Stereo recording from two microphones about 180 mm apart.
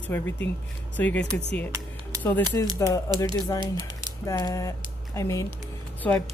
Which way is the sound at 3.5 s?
25° right (ahead or behind).